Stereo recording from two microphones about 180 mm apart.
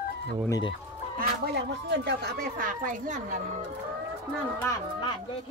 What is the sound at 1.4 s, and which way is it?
Speech, 70° right (ahead or behind).